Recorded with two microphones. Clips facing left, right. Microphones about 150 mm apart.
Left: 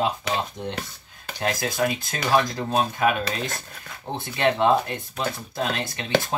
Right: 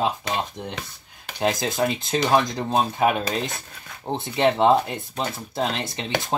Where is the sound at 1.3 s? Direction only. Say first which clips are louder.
Right 3 dB; 20° right (ahead or behind).